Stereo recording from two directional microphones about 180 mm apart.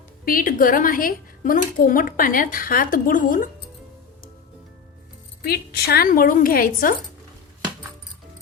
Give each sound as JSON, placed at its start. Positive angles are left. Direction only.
{"t": 0.3, "sound": "speech", "side_deg": 50}
{"t": 5.4, "sound": "speech", "side_deg": 60}